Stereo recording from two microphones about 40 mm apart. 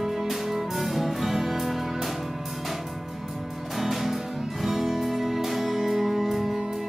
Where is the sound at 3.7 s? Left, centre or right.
Centre.